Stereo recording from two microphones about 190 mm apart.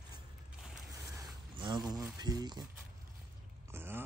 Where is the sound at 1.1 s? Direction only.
20° right (ahead or behind).